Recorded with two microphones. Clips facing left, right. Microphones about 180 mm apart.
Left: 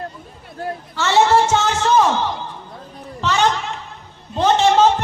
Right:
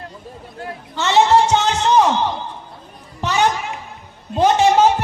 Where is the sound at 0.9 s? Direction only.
20° right (ahead or behind).